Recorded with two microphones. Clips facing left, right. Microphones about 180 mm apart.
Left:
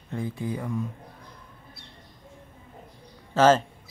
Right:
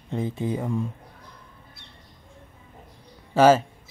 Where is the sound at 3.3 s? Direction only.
10° right (ahead or behind).